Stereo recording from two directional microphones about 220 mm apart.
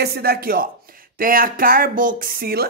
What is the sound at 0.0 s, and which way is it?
Speech, 45° right (ahead or behind).